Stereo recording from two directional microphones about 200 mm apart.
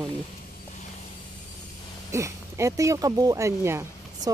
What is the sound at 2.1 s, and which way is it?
Speech, 15° right (ahead or behind).